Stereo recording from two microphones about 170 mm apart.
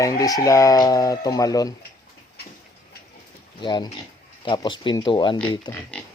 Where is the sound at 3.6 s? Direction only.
25° left (ahead or behind).